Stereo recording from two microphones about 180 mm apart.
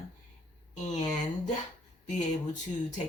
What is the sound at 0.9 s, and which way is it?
Speech, 40° left (ahead or behind).